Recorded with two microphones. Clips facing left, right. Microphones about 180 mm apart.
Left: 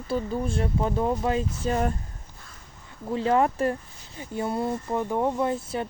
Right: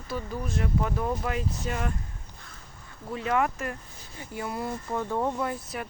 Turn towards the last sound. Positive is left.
turn(degrees=25)  # may be behind; listen again after turning